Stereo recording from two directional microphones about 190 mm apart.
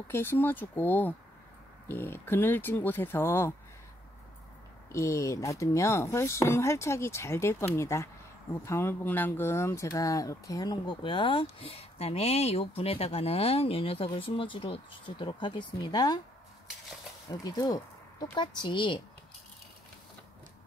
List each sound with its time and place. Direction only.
0.1 s speech: 10° left (ahead or behind)
4.9 s speech: 15° left (ahead or behind)
17.3 s speech: 20° left (ahead or behind)